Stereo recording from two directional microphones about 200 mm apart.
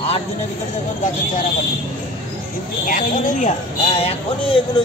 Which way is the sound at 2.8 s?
40° left (ahead or behind).